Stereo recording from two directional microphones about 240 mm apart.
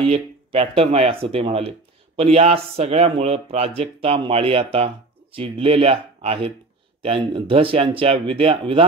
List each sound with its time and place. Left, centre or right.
0.1 s speech: right